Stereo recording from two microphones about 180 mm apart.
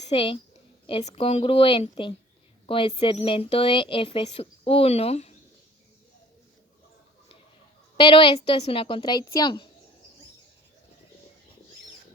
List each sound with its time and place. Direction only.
0.0 s a woman's voice: 30° left (ahead or behind)
7.9 s a woman's voice: 25° left (ahead or behind)